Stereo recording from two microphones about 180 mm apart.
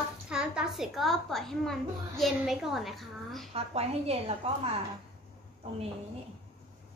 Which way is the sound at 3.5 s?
35° right (ahead or behind).